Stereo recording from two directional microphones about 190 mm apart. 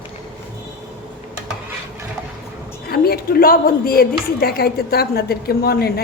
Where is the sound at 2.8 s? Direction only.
55° left (ahead or behind).